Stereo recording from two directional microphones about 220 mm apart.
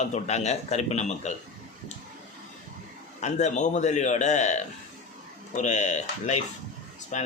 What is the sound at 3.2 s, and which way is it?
Speech, 30° left (ahead or behind).